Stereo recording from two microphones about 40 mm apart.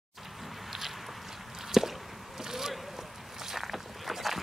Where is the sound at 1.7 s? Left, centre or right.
Centre.